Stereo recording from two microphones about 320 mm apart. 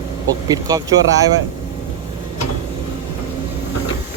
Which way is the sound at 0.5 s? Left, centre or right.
Centre.